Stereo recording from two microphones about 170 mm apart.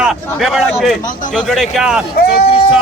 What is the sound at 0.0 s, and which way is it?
A man's voice, centre (ahead or behind).